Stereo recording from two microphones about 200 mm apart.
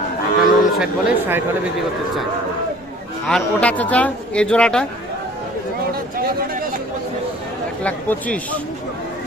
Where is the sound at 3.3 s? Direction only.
5° left (ahead or behind).